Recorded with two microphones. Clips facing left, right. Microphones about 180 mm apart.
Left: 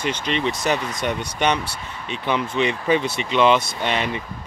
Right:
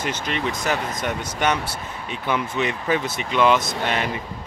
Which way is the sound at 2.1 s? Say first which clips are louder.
Left 2 dB; 5° right (ahead or behind).